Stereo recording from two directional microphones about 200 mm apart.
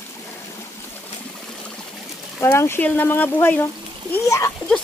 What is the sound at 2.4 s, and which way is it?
Speech, 15° left (ahead or behind).